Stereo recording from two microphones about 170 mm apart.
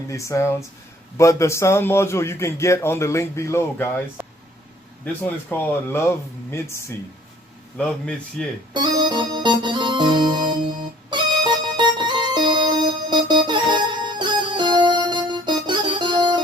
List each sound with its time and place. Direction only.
0.1 s a man's voice: 15° left (ahead or behind)
4.2 s a sound: 10° right (ahead or behind)
5.5 s a man's voice: 15° left (ahead or behind)
7.8 s a man's voice: 5° left (ahead or behind)
8.7 s organ: 25° right (ahead or behind)
11.1 s music: 25° right (ahead or behind)